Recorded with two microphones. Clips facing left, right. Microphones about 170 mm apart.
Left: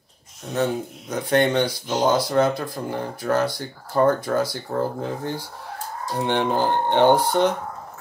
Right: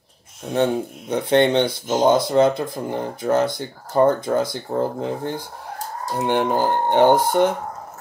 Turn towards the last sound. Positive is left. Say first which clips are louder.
# right 2 dB
turn(degrees=-10)  # may be behind; listen again after turning